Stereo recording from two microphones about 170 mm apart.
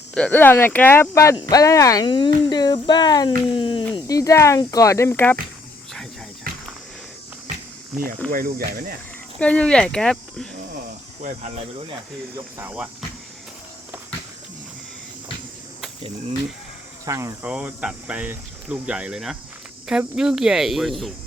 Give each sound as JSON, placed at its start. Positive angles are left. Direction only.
{"t": 0.1, "sound": "speech", "side_deg": 10}
{"t": 6.5, "sound": "a sound", "side_deg": -55}
{"t": 8.3, "sound": "speech", "side_deg": -55}
{"t": 9.4, "sound": "speech", "side_deg": 5}
{"t": 11.2, "sound": "speech", "side_deg": -45}
{"t": 12.5, "sound": "speech", "side_deg": -10}
{"t": 17.1, "sound": "speech", "side_deg": -15}